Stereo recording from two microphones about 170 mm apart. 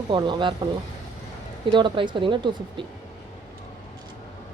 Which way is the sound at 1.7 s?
25° right (ahead or behind).